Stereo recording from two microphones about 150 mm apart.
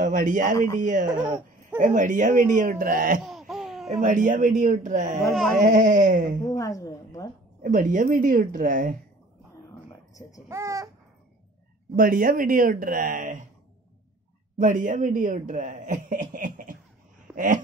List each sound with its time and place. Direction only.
0.0 s a man's voice: 60° right (ahead or behind)
3.3 s laughter: centre (ahead or behind)
4.0 s a man's voice: 60° right (ahead or behind)
5.2 s speech: centre (ahead or behind)
5.6 s a man's voice: 60° right (ahead or behind)
6.4 s a sound: 20° left (ahead or behind)
7.6 s a man's voice: 65° right (ahead or behind)
10.5 s speech: 20° right (ahead or behind)
11.9 s speech: 70° right (ahead or behind)
14.6 s a man's voice: 60° right (ahead or behind)